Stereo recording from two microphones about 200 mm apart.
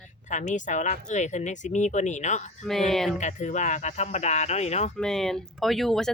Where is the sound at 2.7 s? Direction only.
Centre (ahead or behind).